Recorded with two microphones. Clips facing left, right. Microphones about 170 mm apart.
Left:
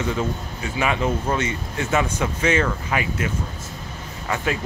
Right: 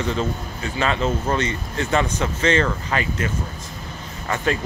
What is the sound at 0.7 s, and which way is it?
Speech, 10° left (ahead or behind).